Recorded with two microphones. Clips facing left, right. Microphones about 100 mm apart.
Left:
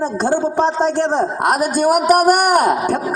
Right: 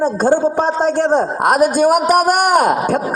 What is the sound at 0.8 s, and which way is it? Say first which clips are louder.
A man's voice: right 2 dB; 45° right (ahead or behind).